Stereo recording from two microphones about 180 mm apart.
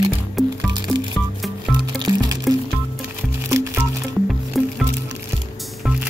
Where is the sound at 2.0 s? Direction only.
20° right (ahead or behind).